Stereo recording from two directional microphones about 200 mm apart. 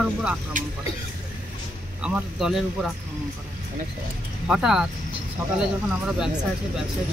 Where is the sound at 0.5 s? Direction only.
40° right (ahead or behind).